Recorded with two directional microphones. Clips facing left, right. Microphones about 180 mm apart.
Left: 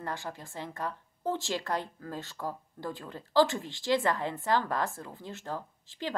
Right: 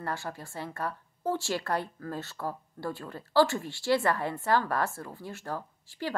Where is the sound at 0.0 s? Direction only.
15° left (ahead or behind).